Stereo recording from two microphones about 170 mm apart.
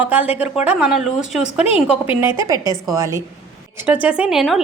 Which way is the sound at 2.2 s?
20° right (ahead or behind).